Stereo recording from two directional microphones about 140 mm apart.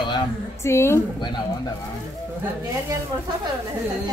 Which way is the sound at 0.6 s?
20° left (ahead or behind).